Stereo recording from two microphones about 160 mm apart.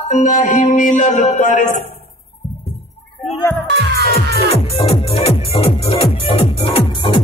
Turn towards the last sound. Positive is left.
turn(degrees=35)  # may be behind; listen again after turning